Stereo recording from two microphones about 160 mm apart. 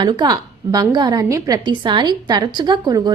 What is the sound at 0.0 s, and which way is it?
A woman's voice, 25° right (ahead or behind).